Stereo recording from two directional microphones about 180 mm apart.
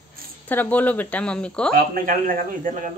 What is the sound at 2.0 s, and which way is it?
Speech, 50° right (ahead or behind).